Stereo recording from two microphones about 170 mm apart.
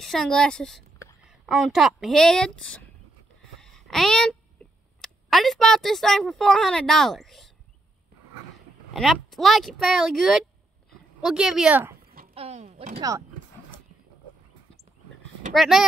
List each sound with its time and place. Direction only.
0.0 s speech: 5° left (ahead or behind)
3.5 s a sound: 5° left (ahead or behind)
5.0 s speech: centre (ahead or behind)
8.9 s speech: centre (ahead or behind)
12.4 s speech: 40° right (ahead or behind)
15.5 s speech: centre (ahead or behind)